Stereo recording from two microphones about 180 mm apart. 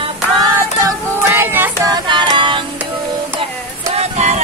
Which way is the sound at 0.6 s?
15° right (ahead or behind).